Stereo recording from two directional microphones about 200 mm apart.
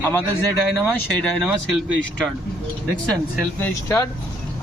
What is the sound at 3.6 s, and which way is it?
Speech, 10° left (ahead or behind).